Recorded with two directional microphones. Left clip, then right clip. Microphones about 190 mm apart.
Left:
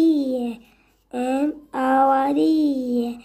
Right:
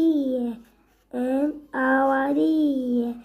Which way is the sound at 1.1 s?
20° left (ahead or behind).